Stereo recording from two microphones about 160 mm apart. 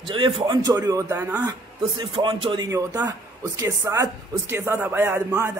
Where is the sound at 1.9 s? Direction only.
30° right (ahead or behind).